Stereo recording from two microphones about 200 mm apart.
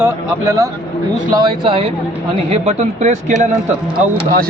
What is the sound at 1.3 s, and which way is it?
Speech, 25° right (ahead or behind).